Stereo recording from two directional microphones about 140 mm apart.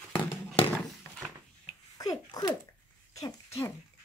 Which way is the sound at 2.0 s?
25° left (ahead or behind).